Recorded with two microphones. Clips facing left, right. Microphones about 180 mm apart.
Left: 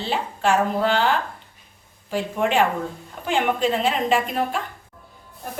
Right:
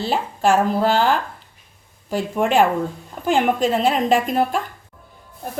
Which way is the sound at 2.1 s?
40° right (ahead or behind).